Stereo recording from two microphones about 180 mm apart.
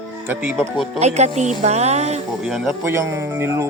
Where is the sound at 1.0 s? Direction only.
40° right (ahead or behind).